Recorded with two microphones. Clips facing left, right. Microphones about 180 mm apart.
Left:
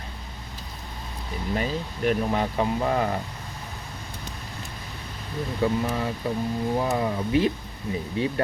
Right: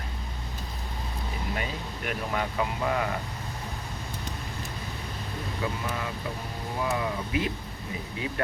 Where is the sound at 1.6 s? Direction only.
35° left (ahead or behind).